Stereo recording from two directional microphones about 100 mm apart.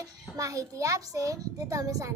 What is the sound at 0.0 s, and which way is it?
A child's voice, 35° right (ahead or behind).